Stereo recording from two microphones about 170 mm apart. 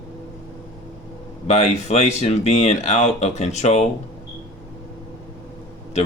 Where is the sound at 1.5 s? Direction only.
40° left (ahead or behind).